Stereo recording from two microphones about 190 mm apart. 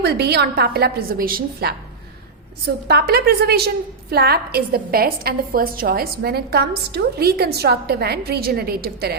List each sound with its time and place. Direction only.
0.0 s a woman's voice: 60° right (ahead or behind)